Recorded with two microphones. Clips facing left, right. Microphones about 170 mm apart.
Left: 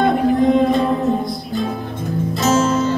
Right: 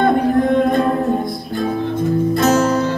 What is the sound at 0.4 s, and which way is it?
Music, 50° right (ahead or behind).